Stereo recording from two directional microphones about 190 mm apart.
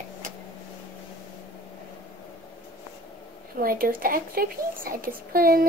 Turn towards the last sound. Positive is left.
turn(degrees=-50)  # may be behind; listen again after turning